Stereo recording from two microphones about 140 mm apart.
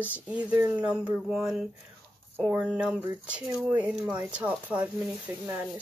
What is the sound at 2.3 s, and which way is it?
Speech, 15° right (ahead or behind).